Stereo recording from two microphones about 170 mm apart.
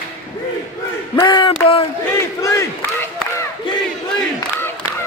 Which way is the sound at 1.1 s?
25° left (ahead or behind).